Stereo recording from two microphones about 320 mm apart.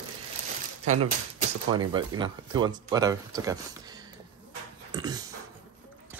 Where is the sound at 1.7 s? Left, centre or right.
Centre.